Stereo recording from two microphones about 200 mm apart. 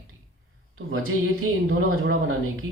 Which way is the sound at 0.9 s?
90° right.